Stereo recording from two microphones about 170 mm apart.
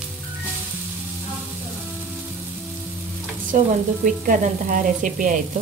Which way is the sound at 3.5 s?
55° right (ahead or behind).